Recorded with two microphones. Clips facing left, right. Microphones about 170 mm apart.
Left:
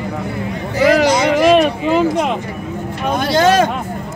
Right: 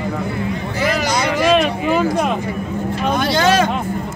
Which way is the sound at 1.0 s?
20° left (ahead or behind).